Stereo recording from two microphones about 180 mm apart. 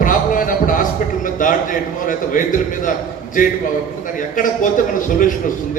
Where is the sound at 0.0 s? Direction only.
50° left (ahead or behind).